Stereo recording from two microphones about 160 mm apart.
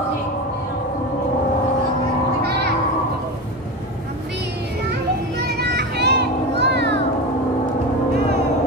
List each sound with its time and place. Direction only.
5.6 s children playing: 90° right